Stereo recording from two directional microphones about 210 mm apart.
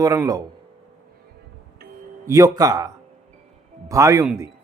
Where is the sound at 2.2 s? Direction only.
15° right (ahead or behind).